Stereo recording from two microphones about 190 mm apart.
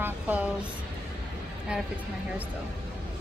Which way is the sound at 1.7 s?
5° right (ahead or behind).